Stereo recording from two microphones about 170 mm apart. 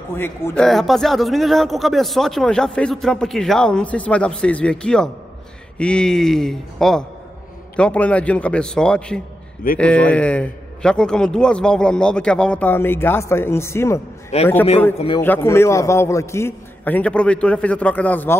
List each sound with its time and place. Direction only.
0.1 s a man's voice: 15° left (ahead or behind)
0.6 s a man's voice: centre (ahead or behind)
14.3 s a man's voice: 40° left (ahead or behind)
15.1 s a man's voice: 15° left (ahead or behind)